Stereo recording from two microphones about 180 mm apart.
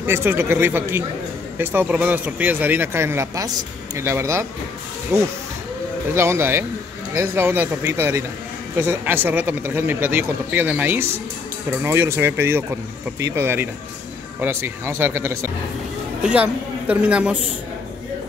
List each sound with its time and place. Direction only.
0.0 s speech: 10° right (ahead or behind)